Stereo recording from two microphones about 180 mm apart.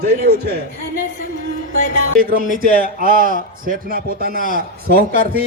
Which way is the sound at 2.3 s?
50° right (ahead or behind).